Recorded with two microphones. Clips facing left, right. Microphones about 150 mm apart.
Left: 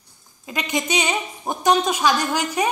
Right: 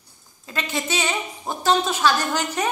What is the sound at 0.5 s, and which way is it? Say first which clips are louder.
A woman's voice: left 2 dB; 15° left (ahead or behind).